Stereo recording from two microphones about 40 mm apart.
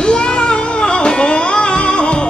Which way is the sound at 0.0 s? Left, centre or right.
Left.